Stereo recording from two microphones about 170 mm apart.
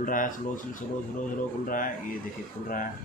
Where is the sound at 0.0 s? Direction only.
50° left (ahead or behind).